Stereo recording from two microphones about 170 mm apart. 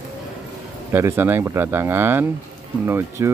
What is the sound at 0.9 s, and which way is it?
Speech, 15° right (ahead or behind).